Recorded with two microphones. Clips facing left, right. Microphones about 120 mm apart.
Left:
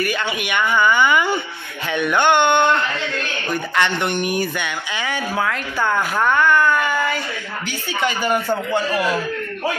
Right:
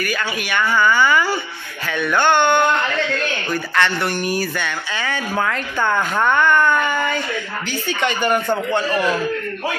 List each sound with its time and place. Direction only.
0.0 s speech: 20° left (ahead or behind)